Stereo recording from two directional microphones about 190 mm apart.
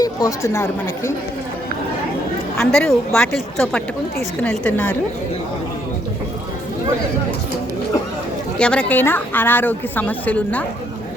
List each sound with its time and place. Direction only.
0.0 s a woman's voice: 20° left (ahead or behind)
2.6 s a woman's voice: centre (ahead or behind)
8.5 s a woman's voice: 5° left (ahead or behind)